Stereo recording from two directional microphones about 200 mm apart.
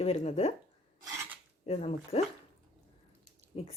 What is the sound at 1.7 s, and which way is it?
Speech, 30° left (ahead or behind).